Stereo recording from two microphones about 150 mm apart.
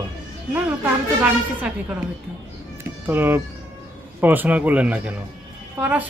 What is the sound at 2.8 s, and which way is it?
Cat, 15° right (ahead or behind).